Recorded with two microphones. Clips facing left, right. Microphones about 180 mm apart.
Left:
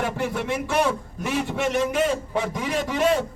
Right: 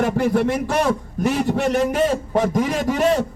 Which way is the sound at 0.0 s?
40° right (ahead or behind).